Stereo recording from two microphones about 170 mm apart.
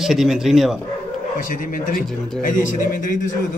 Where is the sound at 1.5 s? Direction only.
55° left (ahead or behind).